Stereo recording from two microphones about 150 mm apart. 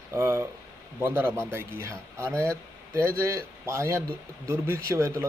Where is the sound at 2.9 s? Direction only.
15° right (ahead or behind).